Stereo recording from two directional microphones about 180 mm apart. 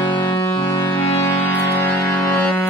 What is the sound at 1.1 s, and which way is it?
Music, 10° left (ahead or behind).